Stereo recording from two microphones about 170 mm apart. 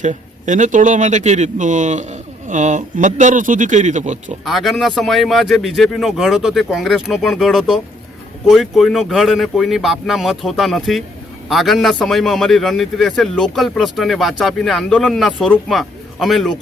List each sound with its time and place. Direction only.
0.0 s speech: 45° right (ahead or behind)
4.4 s a man's voice: centre (ahead or behind)